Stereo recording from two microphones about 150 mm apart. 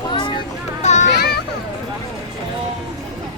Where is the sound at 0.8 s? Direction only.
50° left (ahead or behind).